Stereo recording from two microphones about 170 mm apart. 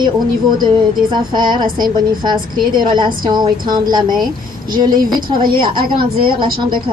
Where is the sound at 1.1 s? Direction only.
25° right (ahead or behind).